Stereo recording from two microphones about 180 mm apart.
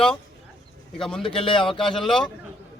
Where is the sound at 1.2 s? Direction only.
30° left (ahead or behind).